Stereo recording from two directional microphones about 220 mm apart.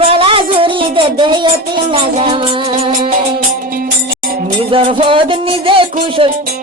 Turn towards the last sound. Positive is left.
turn(degrees=-25)  # may be behind; listen again after turning